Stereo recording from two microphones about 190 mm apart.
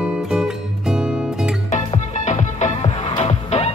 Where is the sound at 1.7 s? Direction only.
40° left (ahead or behind).